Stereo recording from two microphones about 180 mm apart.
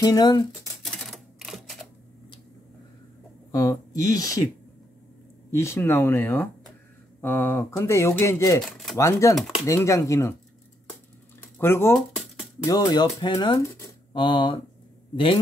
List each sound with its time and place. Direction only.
0.0 s speech: 25° left (ahead or behind)
0.8 s typewriter: centre (ahead or behind)
3.5 s speech: 20° left (ahead or behind)
5.5 s speech: 15° left (ahead or behind)
8.6 s a sound: centre (ahead or behind)
8.9 s speech: 15° left (ahead or behind)
11.5 s speech: 15° left (ahead or behind)
12.0 s music: centre (ahead or behind)
12.6 s speech: 20° left (ahead or behind)
14.2 s speech: 25° left (ahead or behind)